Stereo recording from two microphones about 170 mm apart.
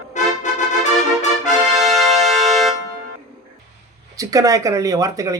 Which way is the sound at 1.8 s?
Centre (ahead or behind).